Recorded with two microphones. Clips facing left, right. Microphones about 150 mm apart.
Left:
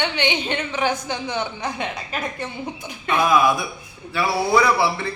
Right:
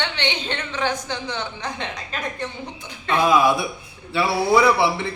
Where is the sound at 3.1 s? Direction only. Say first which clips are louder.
Right 1 dB; 30° right (ahead or behind).